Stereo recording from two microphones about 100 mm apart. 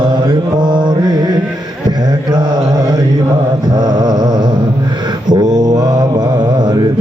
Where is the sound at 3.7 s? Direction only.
40° right (ahead or behind).